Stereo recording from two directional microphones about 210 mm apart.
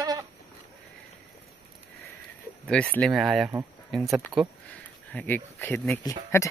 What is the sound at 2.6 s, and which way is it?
Speech, 5° left (ahead or behind).